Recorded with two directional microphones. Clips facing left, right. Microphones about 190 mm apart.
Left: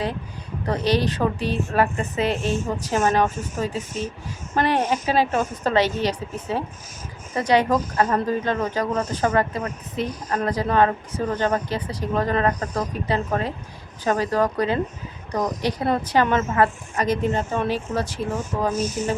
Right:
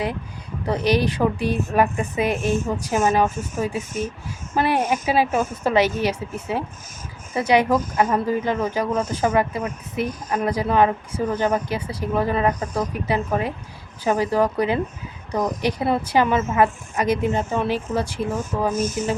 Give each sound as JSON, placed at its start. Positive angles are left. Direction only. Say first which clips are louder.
{"t": 0.6, "sound": "speech", "louder": "right 1 dB", "side_deg": -10}
{"t": 18.7, "sound": "speech", "louder": "right 1 dB", "side_deg": -50}